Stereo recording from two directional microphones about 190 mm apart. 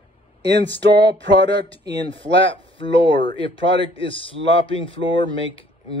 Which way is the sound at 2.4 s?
30° left (ahead or behind).